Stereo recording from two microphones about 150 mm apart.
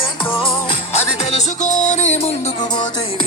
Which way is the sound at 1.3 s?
50° left (ahead or behind).